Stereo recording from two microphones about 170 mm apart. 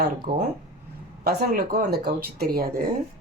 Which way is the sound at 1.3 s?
65° right (ahead or behind).